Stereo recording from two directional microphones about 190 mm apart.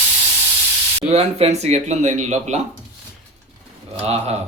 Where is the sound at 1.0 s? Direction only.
35° right (ahead or behind).